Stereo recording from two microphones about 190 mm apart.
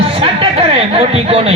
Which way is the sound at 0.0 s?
30° right (ahead or behind).